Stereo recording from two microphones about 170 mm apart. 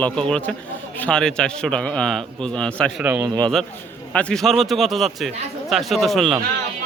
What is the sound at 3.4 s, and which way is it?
A man's voice, centre (ahead or behind).